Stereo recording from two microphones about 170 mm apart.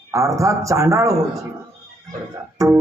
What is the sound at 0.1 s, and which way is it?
A man's voice, 20° right (ahead or behind).